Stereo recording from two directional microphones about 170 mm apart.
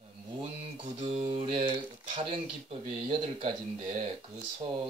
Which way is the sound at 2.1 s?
30° right (ahead or behind).